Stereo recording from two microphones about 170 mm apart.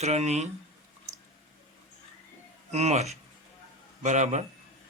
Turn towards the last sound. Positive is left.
turn(degrees=-45)  # may be behind; listen again after turning